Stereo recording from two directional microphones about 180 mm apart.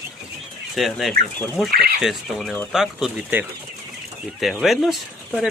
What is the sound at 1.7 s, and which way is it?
Speech, 60° right (ahead or behind).